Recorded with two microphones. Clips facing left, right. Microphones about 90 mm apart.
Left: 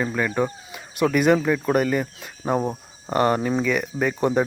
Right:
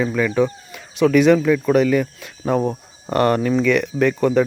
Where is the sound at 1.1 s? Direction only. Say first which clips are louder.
Right 5 dB; 10° left (ahead or behind).